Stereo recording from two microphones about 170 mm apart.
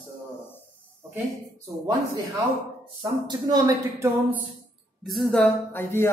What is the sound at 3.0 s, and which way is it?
Speech, 25° right (ahead or behind).